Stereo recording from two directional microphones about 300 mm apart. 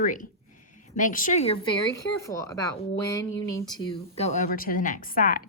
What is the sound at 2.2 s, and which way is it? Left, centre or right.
Speech, centre.